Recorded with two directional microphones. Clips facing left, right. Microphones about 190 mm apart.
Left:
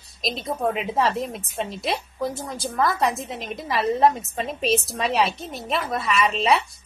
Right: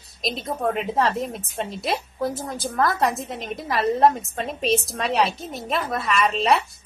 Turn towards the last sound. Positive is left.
turn(degrees=0)  # may be behind; listen again after turning